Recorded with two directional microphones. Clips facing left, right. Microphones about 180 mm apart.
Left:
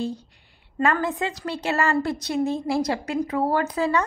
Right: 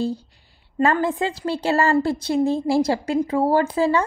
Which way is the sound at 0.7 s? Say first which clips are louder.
Right 3 dB; 30° right (ahead or behind).